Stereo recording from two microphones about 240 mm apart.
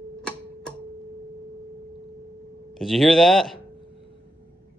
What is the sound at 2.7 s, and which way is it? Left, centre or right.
Speech, centre.